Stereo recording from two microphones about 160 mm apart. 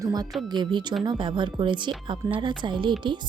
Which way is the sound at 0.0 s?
25° right (ahead or behind).